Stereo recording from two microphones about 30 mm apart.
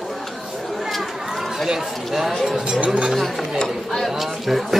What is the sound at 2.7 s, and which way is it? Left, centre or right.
Speech, right.